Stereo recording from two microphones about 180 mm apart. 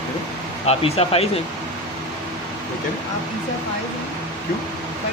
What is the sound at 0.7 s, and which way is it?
Speech, 35° left (ahead or behind).